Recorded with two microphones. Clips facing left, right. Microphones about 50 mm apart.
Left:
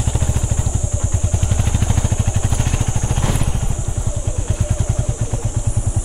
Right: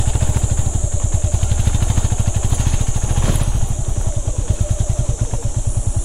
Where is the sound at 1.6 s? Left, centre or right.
Left.